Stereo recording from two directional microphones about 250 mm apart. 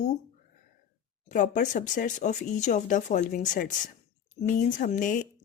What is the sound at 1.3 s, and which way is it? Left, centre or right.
Speech, left.